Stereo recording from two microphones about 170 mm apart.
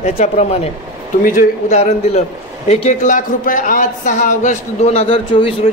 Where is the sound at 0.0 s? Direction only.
40° left (ahead or behind).